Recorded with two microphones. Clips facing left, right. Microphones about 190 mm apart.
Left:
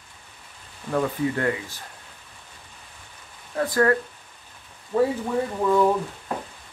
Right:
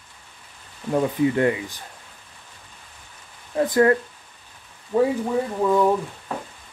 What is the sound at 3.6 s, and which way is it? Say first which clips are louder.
Speech: right 3 dB; 20° right (ahead or behind).